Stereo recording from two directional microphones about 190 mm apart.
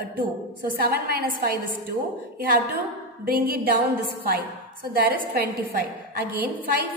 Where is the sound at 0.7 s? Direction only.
50° right (ahead or behind).